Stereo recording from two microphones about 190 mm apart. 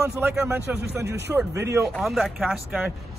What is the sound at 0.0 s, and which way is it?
Speech, 15° right (ahead or behind).